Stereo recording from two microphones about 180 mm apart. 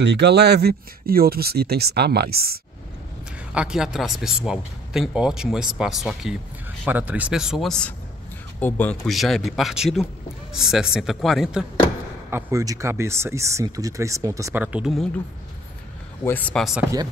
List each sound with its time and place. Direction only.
0.0 s speech: 70° right (ahead or behind)
3.5 s speech: 5° right (ahead or behind)
12.3 s speech: 15° right (ahead or behind)
16.3 s speech: 10° left (ahead or behind)